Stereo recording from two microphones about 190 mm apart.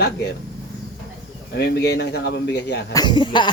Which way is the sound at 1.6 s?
60° left (ahead or behind).